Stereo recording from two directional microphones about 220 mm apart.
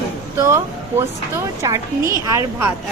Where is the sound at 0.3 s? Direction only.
15° right (ahead or behind).